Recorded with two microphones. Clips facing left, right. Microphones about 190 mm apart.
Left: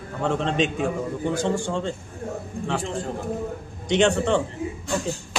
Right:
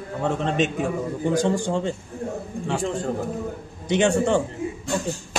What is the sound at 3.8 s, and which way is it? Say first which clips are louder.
Speech: even; 5° right (ahead or behind).